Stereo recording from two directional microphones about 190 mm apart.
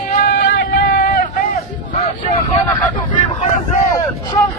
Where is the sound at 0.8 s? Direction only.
50° left (ahead or behind).